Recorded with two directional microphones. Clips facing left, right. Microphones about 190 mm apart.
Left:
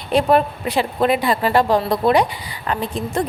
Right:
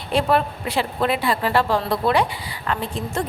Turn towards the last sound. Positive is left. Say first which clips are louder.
# left 4 dB
turn(degrees=15)  # may be behind; listen again after turning